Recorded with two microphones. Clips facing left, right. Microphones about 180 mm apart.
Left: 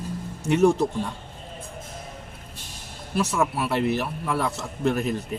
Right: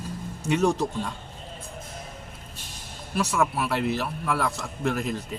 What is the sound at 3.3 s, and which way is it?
A man's voice, centre (ahead or behind).